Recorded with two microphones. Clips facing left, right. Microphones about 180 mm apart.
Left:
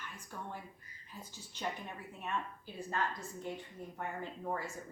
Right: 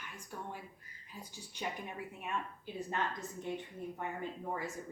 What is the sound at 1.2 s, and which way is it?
Speech, 15° right (ahead or behind).